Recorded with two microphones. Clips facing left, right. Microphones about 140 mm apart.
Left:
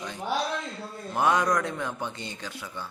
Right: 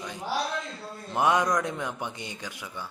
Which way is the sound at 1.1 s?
20° right (ahead or behind).